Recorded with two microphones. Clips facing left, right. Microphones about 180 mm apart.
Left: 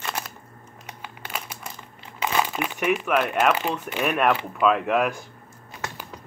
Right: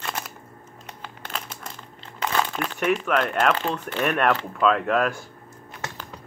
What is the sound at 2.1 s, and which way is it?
Speech, 10° left (ahead or behind).